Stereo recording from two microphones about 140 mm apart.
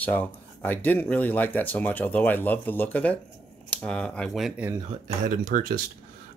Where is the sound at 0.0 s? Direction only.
10° left (ahead or behind).